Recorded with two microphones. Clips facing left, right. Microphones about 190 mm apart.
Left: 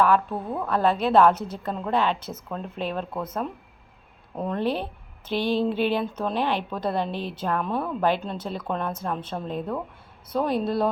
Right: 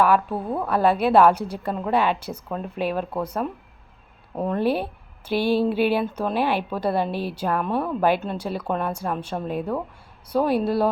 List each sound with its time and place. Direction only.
0.0 s speech: 10° right (ahead or behind)
4.4 s speech: 10° right (ahead or behind)